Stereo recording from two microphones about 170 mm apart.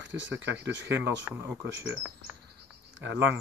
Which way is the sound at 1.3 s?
15° right (ahead or behind).